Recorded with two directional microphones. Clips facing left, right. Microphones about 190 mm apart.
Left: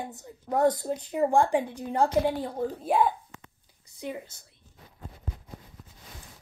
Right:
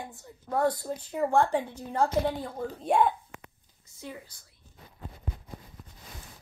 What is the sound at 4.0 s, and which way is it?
Speech, 20° left (ahead or behind).